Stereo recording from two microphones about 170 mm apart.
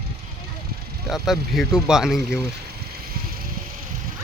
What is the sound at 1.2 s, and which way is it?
Speech, centre (ahead or behind).